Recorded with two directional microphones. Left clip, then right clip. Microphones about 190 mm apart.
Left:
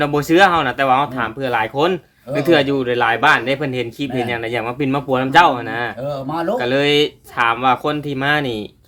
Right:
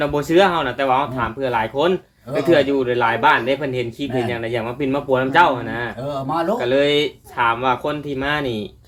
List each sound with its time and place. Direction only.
0.0 s speech: 50° left (ahead or behind)